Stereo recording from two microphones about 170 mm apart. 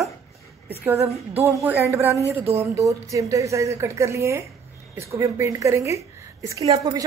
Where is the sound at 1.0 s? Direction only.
35° right (ahead or behind).